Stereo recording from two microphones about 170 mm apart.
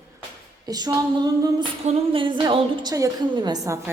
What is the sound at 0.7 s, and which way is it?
A woman's voice, 20° right (ahead or behind).